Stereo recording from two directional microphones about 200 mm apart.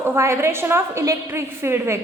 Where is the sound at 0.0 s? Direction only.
10° right (ahead or behind).